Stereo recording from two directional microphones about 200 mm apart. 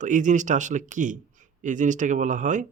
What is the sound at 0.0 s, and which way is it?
A man's voice, 40° right (ahead or behind).